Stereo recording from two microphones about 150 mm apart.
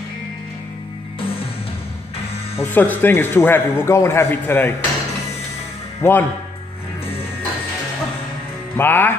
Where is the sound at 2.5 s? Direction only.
10° left (ahead or behind).